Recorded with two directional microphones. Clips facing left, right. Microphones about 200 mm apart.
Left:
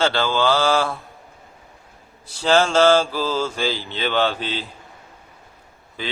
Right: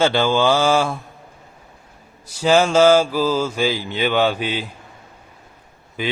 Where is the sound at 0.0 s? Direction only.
15° right (ahead or behind).